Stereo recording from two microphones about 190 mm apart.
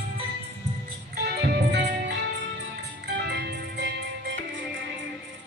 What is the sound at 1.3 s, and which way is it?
Music, 60° right (ahead or behind).